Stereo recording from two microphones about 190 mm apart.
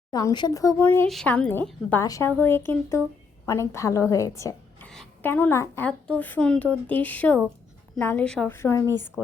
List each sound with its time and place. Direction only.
0.1 s a woman's voice: 20° left (ahead or behind)